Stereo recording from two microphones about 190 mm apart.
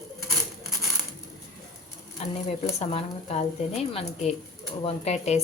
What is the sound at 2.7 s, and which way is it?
A woman's voice, 30° left (ahead or behind).